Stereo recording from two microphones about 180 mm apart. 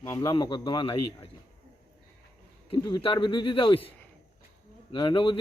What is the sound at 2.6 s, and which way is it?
A man's voice, 25° left (ahead or behind).